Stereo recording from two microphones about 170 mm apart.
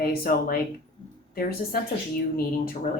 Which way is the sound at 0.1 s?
55° left (ahead or behind).